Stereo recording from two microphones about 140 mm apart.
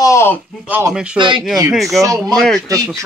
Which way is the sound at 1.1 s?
35° right (ahead or behind).